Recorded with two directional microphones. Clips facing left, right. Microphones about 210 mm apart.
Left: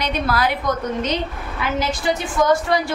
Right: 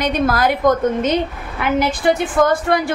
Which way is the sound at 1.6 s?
55° right (ahead or behind).